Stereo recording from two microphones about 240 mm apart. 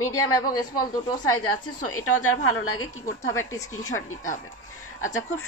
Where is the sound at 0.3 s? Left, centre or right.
Centre.